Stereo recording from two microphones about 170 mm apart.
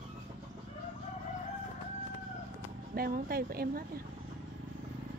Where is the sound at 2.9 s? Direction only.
60° right (ahead or behind).